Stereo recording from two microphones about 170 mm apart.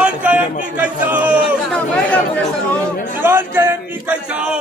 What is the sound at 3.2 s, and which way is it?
Speech, 10° right (ahead or behind).